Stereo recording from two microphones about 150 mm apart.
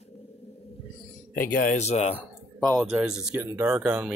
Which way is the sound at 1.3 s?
65° left (ahead or behind).